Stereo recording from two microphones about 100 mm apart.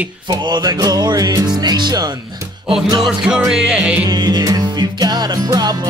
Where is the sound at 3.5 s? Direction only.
5° right (ahead or behind).